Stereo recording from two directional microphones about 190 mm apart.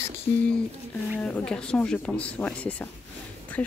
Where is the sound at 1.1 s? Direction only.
5° left (ahead or behind).